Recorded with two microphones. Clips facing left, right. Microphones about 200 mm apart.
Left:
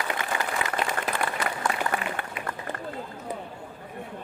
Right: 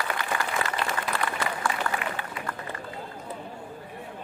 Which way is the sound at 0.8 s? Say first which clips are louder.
Left 1 dB; 20° left (ahead or behind).